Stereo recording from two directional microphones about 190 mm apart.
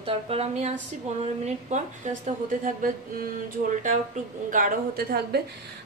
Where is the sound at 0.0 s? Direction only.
30° right (ahead or behind).